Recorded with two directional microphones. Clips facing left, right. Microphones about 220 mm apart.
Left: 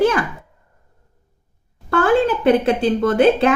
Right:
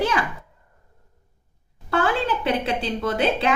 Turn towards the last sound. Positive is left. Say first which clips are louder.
# left 8 dB
turn(degrees=50)  # may be behind; listen again after turning